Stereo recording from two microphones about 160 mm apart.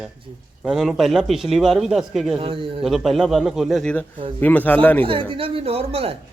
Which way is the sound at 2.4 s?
35° right (ahead or behind).